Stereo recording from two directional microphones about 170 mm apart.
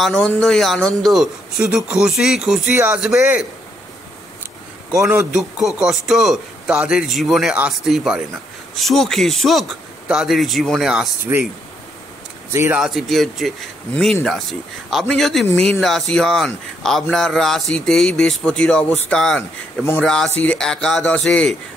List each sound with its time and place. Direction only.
0.0 s speech: 5° left (ahead or behind)
4.9 s speech: 15° right (ahead or behind)
5.3 s speech: centre (ahead or behind)
12.5 s speech: 15° right (ahead or behind)
12.8 s speech: centre (ahead or behind)